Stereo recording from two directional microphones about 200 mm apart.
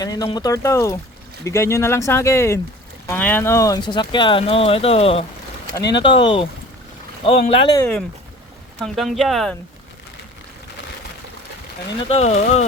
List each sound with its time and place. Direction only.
0.0 s speech: 20° left (ahead or behind)
7.8 s speech: 10° left (ahead or behind)
12.0 s speech: 30° left (ahead or behind)